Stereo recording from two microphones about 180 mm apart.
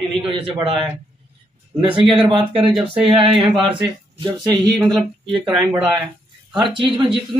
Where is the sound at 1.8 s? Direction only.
30° right (ahead or behind).